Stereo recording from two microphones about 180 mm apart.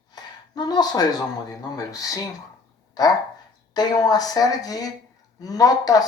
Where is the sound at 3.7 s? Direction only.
20° left (ahead or behind).